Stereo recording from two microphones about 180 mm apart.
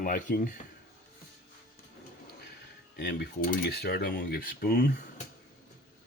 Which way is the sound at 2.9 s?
75° left (ahead or behind).